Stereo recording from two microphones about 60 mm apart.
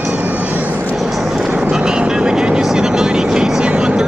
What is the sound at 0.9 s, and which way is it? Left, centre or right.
Vehicle, centre.